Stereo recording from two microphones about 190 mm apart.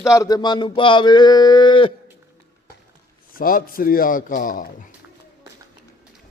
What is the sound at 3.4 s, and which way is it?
A man's voice, 50° left (ahead or behind).